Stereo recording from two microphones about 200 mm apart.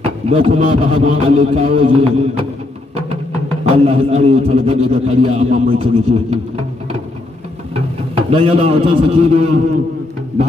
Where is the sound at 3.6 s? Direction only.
30° right (ahead or behind).